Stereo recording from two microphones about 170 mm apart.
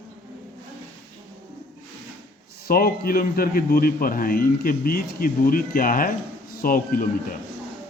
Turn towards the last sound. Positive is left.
turn(degrees=55)  # may be behind; listen again after turning